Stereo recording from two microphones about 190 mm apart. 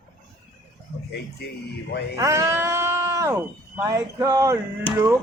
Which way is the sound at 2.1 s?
15° right (ahead or behind).